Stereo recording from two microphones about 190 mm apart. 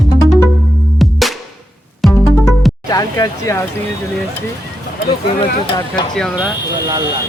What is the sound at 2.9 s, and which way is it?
Speech, 20° left (ahead or behind).